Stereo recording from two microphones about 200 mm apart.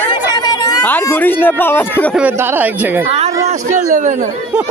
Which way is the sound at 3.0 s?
30° right (ahead or behind).